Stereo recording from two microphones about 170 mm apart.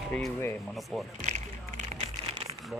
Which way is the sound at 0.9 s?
Centre (ahead or behind).